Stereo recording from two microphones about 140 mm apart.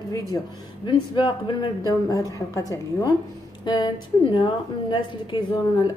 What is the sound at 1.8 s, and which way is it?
A woman's voice, 25° left (ahead or behind).